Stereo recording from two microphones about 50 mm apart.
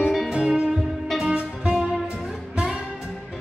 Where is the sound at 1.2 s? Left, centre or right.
Right.